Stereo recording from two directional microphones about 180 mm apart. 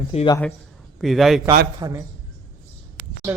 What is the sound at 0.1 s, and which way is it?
Speech, 35° left (ahead or behind).